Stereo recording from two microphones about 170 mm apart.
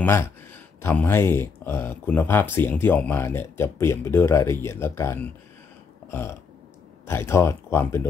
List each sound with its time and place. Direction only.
0.0 s speech: 10° left (ahead or behind)
6.0 s burping: 15° left (ahead or behind)
7.1 s speech: 15° left (ahead or behind)